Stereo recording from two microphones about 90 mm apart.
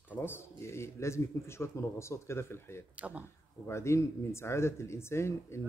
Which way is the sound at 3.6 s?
30° left (ahead or behind).